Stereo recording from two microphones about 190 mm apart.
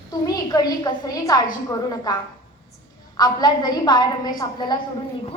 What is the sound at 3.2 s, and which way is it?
A woman's voice, 20° left (ahead or behind).